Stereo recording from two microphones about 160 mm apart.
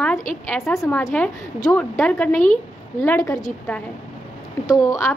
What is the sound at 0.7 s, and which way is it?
A woman's voice, 20° left (ahead or behind).